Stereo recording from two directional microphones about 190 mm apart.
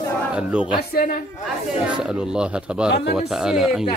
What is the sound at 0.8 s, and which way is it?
Speech, 55° left (ahead or behind).